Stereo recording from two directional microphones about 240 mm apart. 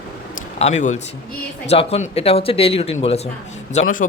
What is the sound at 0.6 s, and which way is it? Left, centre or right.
Speech, left.